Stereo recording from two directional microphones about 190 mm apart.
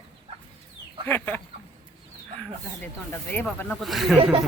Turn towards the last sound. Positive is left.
turn(degrees=0)  # may be behind; listen again after turning